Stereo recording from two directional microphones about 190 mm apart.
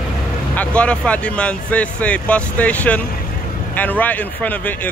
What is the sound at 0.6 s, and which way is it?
Speech, 5° left (ahead or behind).